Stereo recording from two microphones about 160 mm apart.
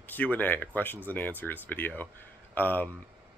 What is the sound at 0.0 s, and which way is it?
Speech, 10° left (ahead or behind).